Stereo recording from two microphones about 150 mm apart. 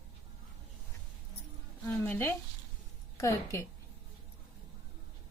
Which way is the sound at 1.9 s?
10° left (ahead or behind).